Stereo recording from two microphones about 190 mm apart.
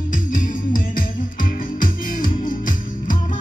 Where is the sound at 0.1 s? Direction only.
45° left (ahead or behind).